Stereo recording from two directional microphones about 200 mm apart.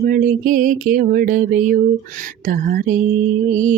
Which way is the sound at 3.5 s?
40° right (ahead or behind).